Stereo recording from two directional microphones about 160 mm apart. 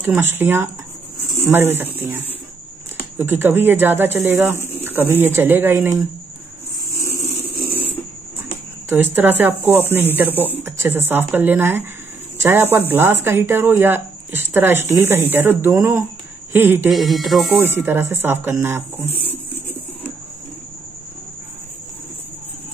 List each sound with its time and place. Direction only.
0.2 s a woman's voice: 15° right (ahead or behind)
4.6 s bird: 15° left (ahead or behind)
4.8 s a woman's voice: 15° right (ahead or behind)
7.0 s a sound: 20° left (ahead or behind)
8.8 s a woman's voice: 10° right (ahead or behind)
16.9 s speech: centre (ahead or behind)
17.7 s a woman's voice: 15° right (ahead or behind)
19.1 s a sound: 15° left (ahead or behind)